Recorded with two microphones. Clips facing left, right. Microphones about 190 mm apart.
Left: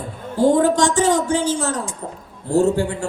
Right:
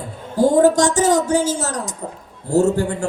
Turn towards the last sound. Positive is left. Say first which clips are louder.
# right 1 dB
turn(degrees=-40)  # may be behind; listen again after turning